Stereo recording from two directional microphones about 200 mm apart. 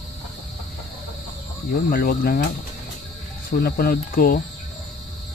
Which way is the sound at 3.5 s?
50° left (ahead or behind).